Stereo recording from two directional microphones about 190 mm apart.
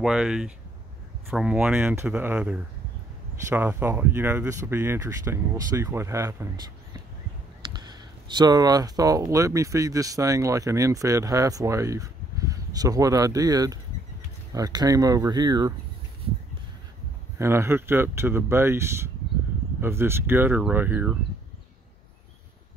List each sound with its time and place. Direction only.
0.0 s speech: 5° right (ahead or behind)
7.6 s speech: 25° right (ahead or behind)
17.4 s speech: 15° right (ahead or behind)